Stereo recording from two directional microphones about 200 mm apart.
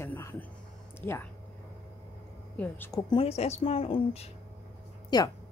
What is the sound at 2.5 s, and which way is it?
Speech, 10° left (ahead or behind).